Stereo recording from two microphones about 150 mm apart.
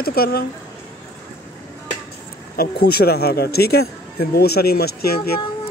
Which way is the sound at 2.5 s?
90° left.